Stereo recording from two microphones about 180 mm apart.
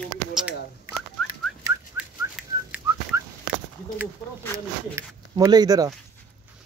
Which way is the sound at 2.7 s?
5° right (ahead or behind).